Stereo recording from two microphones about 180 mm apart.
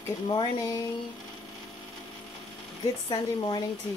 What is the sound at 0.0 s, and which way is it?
Speech, 20° left (ahead or behind).